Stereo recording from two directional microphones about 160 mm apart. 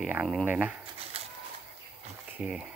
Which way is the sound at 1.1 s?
40° right (ahead or behind).